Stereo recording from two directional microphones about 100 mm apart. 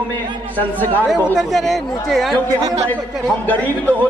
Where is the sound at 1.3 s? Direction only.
Centre (ahead or behind).